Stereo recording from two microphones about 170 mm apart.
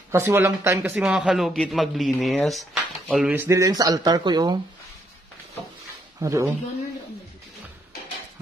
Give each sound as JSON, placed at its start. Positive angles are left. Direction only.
{"t": 0.1, "sound": "a man's voice", "side_deg": -15}
{"t": 3.3, "sound": "speech", "side_deg": -15}
{"t": 6.1, "sound": "speech", "side_deg": -15}